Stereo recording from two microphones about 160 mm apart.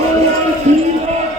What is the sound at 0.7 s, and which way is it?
Music, 45° right (ahead or behind).